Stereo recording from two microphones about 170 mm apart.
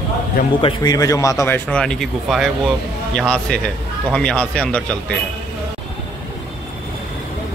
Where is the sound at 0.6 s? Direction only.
25° left (ahead or behind); by 4.9 s 5° left (ahead or behind).